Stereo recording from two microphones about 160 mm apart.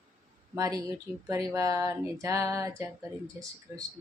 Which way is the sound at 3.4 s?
15° right (ahead or behind).